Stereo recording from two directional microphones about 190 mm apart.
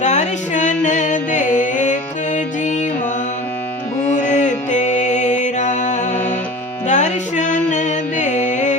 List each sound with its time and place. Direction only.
0.0 s music: 40° left (ahead or behind)
4.0 s music: 40° left (ahead or behind)